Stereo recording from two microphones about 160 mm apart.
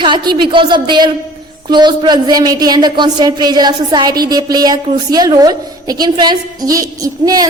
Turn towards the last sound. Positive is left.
turn(degrees=-20)  # may be behind; listen again after turning